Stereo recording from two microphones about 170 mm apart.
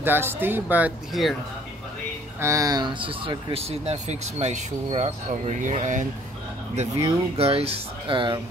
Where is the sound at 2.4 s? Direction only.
20° right (ahead or behind); by 6.1 s 45° right (ahead or behind).